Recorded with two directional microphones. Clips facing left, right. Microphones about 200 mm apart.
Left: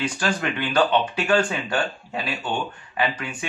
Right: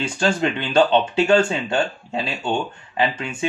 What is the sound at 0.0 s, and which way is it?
Speech, 25° right (ahead or behind).